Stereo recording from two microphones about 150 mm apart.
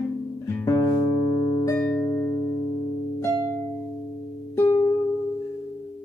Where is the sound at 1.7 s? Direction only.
10° left (ahead or behind).